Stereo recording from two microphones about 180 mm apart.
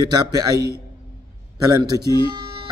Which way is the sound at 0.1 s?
20° right (ahead or behind).